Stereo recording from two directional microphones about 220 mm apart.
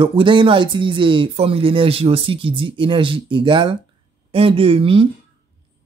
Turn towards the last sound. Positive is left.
turn(degrees=-25)  # may be behind; listen again after turning